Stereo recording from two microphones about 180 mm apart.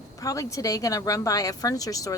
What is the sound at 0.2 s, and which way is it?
A woman's voice, 20° left (ahead or behind).